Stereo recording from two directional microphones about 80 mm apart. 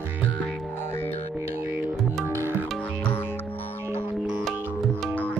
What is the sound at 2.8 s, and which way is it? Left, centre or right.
Music, left.